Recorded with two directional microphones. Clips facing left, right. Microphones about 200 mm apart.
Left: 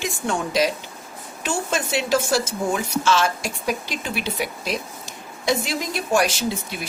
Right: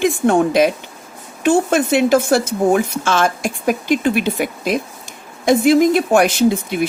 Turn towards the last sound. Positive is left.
turn(degrees=-55)  # may be behind; listen again after turning